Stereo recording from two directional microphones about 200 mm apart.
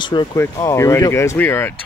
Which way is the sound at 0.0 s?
25° left (ahead or behind).